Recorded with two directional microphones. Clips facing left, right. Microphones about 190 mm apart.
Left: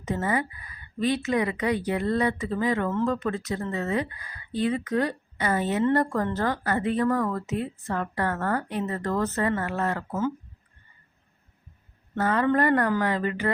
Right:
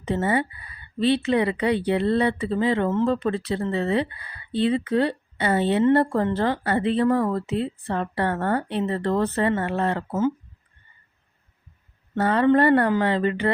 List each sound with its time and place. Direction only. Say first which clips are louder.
0.0 s speech: right 4 dB; 30° right (ahead or behind)
12.2 s speech: right 5 dB; 30° right (ahead or behind)